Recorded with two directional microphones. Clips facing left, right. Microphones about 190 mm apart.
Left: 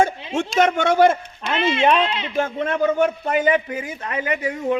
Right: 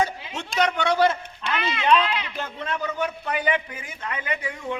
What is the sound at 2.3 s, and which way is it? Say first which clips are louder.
Speech: left 9 dB; 50° left (ahead or behind).